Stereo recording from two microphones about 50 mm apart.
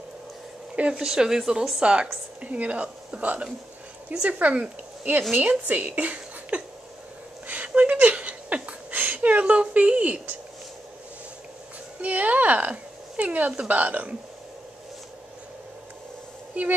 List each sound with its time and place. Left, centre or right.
0.7 s a woman's voice: right
1.0 s speech: centre
1.8 s a woman's voice: right
7.4 s a sound: right
12.0 s a woman's voice: right